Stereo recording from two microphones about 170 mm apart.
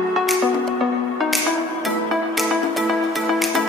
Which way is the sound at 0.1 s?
Centre (ahead or behind).